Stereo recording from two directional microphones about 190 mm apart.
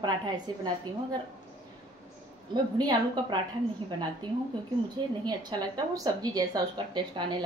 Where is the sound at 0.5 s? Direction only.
20° right (ahead or behind).